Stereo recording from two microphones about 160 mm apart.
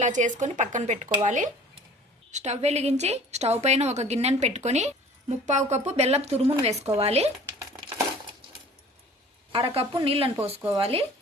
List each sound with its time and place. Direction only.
0.0 s a woman's voice: 50° right (ahead or behind)
9.5 s a woman's voice: 35° right (ahead or behind)